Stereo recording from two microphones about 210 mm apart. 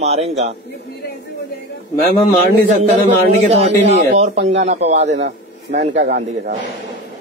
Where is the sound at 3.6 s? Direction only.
30° right (ahead or behind).